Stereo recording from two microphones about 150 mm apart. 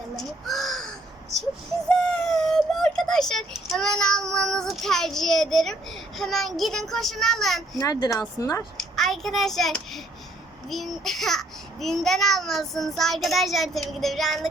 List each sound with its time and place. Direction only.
0.4 s crow: centre (ahead or behind)
1.9 s a sound: 5° left (ahead or behind)
6.1 s a child's voice: centre (ahead or behind)
7.8 s speech: 25° left (ahead or behind)
8.8 s a child's voice: centre (ahead or behind)